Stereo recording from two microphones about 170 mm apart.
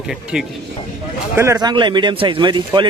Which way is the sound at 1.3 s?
15° right (ahead or behind).